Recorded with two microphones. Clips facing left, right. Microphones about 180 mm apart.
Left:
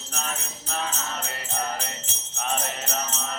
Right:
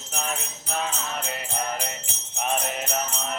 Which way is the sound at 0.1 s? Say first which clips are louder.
Right 3 dB; 15° right (ahead or behind).